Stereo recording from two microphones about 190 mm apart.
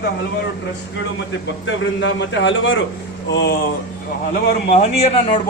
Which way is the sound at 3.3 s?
65° left (ahead or behind).